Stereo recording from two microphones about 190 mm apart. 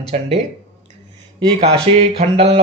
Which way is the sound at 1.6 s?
35° right (ahead or behind).